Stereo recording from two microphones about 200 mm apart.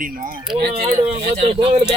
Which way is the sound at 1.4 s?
30° right (ahead or behind).